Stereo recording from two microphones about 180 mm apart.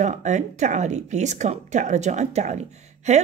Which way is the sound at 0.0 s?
40° right (ahead or behind).